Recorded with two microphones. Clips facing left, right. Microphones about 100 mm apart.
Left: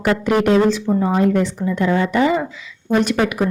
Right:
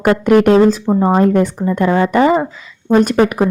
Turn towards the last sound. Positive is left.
turn(degrees=-40)  # may be behind; listen again after turning